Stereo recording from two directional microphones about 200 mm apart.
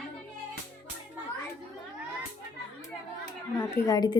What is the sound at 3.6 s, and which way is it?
Speech, 15° left (ahead or behind).